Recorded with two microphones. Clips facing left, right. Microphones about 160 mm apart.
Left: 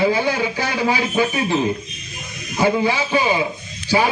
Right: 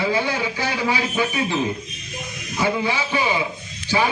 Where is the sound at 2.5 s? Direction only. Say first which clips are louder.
Left 4 dB; 40° left (ahead or behind).